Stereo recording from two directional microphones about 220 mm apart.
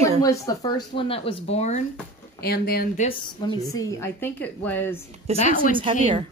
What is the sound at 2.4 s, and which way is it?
Speech, 45° left (ahead or behind).